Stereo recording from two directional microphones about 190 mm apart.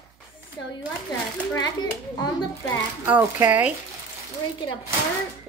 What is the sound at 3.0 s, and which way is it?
Speech, 10° right (ahead or behind).